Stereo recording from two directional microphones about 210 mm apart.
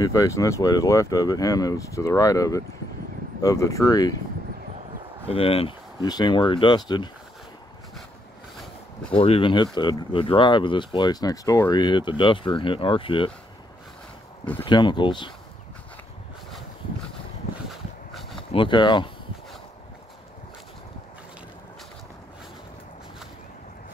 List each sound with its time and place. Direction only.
0.0 s speech: 15° left (ahead or behind)
5.3 s speech: 25° left (ahead or behind)
9.1 s speech: 25° left (ahead or behind)
14.6 s speech: 20° left (ahead or behind)
17.6 s a sound: centre (ahead or behind)
18.5 s speech: 25° left (ahead or behind)